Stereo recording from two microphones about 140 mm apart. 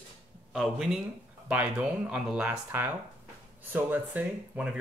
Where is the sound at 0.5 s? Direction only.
5° right (ahead or behind).